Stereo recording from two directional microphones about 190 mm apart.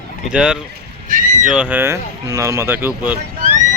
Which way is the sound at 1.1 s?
45° right (ahead or behind).